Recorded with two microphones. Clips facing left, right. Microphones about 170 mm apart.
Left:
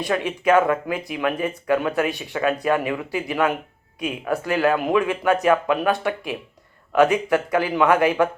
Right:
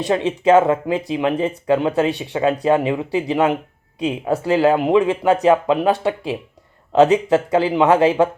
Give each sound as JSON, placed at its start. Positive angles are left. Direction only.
{"t": 0.1, "sound": "speech", "side_deg": -25}